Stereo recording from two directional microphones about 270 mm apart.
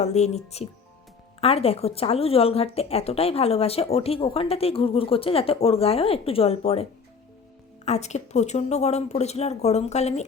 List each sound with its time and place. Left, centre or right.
0.0 s a woman's voice: left
7.9 s a woman's voice: left